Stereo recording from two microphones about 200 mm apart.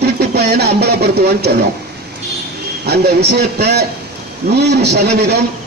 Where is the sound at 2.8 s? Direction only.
55° right (ahead or behind).